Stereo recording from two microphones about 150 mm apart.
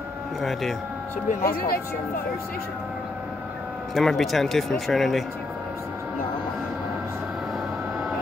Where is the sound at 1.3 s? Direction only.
70° left (ahead or behind).